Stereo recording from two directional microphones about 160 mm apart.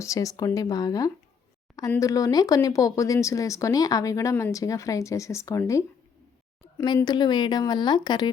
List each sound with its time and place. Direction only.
0.0 s speech: 20° left (ahead or behind)
6.8 s speech: 25° left (ahead or behind)